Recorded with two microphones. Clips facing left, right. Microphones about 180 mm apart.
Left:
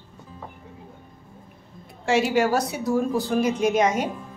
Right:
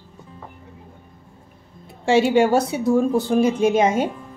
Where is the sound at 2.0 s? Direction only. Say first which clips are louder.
Right 5 dB; 30° right (ahead or behind).